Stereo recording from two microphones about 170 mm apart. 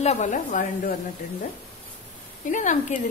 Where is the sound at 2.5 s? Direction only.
45° left (ahead or behind).